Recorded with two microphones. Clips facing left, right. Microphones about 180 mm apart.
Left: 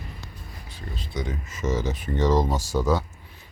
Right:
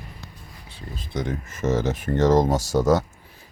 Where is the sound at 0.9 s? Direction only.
50° right (ahead or behind).